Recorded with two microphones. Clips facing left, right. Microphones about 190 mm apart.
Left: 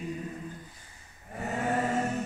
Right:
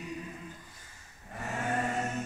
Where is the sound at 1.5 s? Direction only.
40° left (ahead or behind).